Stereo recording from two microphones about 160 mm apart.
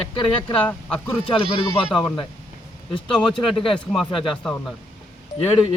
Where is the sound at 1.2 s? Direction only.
30° left (ahead or behind).